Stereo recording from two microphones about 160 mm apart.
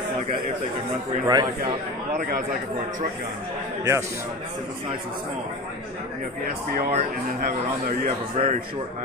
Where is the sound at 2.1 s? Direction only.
60° right (ahead or behind).